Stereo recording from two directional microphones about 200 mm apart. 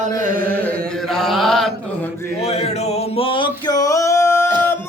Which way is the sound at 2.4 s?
30° left (ahead or behind).